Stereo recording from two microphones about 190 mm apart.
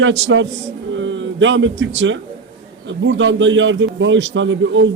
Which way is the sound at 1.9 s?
75° right (ahead or behind).